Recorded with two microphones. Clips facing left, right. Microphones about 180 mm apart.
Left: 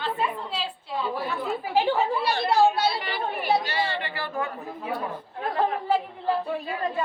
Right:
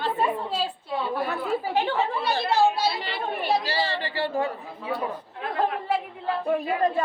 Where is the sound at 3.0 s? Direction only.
30° right (ahead or behind).